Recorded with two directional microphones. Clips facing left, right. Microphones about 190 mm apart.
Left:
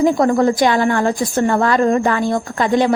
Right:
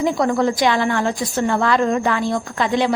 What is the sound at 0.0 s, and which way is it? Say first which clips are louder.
A woman's voice: left 4 dB; 45° left (ahead or behind).